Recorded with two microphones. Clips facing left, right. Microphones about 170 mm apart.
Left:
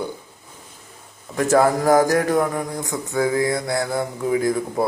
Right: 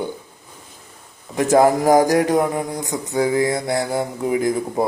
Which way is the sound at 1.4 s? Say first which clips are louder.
Right 2 dB; 15° right (ahead or behind).